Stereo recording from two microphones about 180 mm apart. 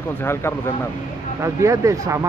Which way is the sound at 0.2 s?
15° left (ahead or behind).